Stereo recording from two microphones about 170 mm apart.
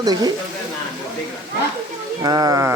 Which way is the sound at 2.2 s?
20° right (ahead or behind).